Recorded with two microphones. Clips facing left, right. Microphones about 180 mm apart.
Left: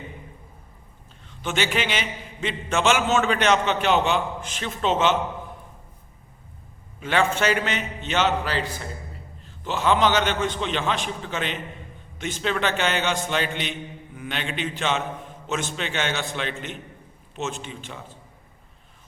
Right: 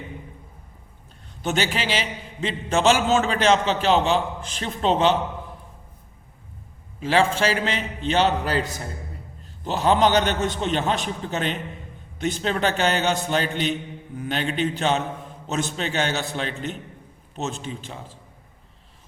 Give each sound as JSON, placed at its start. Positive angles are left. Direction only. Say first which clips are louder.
{"t": 1.3, "sound": "a man's voice", "louder": "right 1 dB", "side_deg": -40}
{"t": 7.0, "sound": "a man's voice", "louder": "right 2 dB", "side_deg": -30}